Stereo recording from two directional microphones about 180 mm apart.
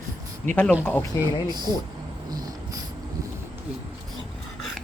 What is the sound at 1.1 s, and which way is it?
Speech, 20° left (ahead or behind).